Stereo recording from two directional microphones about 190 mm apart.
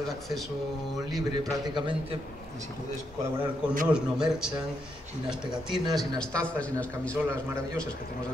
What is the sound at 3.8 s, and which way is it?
Speech, 5° right (ahead or behind).